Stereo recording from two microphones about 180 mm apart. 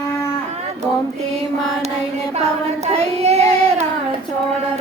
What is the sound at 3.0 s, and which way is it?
Child singing, 35° right (ahead or behind).